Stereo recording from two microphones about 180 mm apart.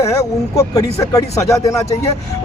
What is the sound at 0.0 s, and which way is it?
Speech, 15° left (ahead or behind).